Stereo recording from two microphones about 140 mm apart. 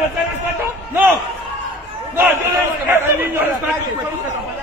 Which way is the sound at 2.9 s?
15° right (ahead or behind).